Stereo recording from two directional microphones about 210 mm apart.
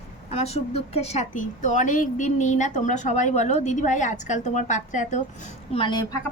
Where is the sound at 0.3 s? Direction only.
30° left (ahead or behind).